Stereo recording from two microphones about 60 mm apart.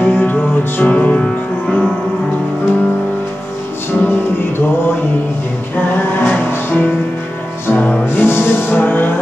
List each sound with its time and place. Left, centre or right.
0.0 s music: left
3.9 s music: left